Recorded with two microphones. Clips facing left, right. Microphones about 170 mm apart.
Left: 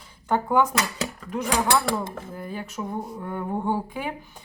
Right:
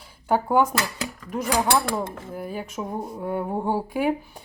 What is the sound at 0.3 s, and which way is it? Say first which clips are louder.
Speech: right 1 dB; 10° right (ahead or behind).